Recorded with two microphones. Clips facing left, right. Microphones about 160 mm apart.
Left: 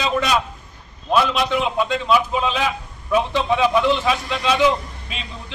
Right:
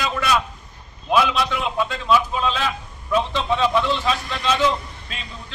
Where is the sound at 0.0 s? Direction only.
20° left (ahead or behind).